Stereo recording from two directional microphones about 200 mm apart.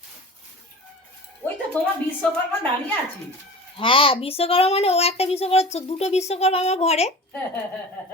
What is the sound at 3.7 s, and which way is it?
Speech, 25° left (ahead or behind).